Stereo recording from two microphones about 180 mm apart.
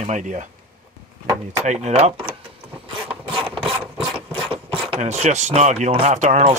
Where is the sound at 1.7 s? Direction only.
40° right (ahead or behind).